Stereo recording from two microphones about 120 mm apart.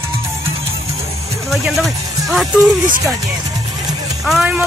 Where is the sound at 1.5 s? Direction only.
Centre (ahead or behind).